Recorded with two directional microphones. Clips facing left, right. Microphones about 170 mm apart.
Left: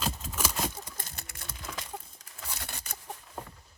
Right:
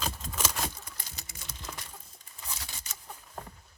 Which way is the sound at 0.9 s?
55° left (ahead or behind).